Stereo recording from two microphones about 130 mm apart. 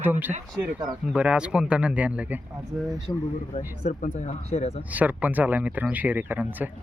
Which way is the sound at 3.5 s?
55° left (ahead or behind).